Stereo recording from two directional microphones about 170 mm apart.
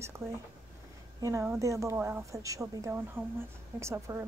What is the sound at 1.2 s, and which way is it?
Speech, 15° right (ahead or behind).